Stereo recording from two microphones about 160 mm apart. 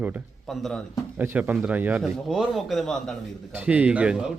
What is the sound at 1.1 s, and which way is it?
A man's voice, 10° right (ahead or behind).